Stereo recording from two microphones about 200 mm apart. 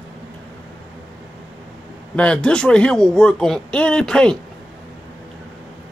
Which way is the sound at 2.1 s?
5° left (ahead or behind).